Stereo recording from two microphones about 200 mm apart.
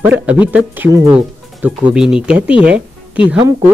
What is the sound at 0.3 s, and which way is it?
A woman's voice, 5° right (ahead or behind).